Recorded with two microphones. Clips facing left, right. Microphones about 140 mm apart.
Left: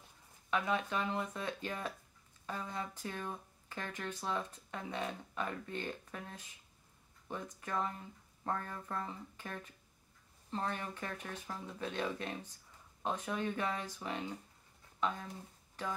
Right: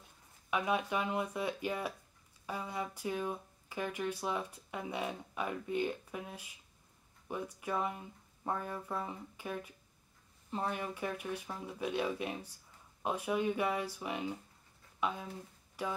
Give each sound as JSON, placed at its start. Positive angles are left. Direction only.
{"t": 0.5, "sound": "speech", "side_deg": -15}